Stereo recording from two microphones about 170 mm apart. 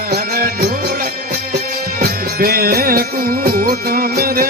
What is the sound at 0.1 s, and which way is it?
Music, 60° right (ahead or behind).